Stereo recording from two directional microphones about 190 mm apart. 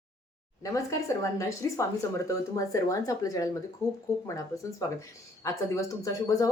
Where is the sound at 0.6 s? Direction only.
15° left (ahead or behind).